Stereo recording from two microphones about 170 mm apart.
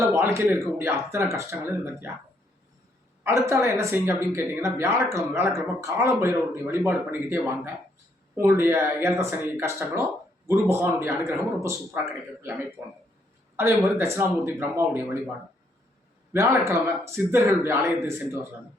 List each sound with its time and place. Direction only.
0.0 s speech: 15° right (ahead or behind)
3.4 s speech: 15° right (ahead or behind)
16.3 s speech: 15° right (ahead or behind)